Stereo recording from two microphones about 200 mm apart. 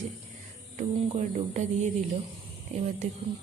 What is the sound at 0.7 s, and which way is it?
Speech, 35° right (ahead or behind).